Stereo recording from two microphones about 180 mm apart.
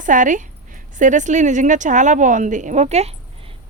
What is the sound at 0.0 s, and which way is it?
Speech, 45° right (ahead or behind).